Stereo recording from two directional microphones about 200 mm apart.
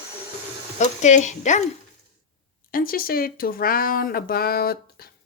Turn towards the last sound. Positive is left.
turn(degrees=50)  # may be behind; listen again after turning